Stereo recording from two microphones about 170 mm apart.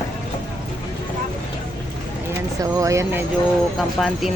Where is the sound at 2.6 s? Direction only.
20° right (ahead or behind).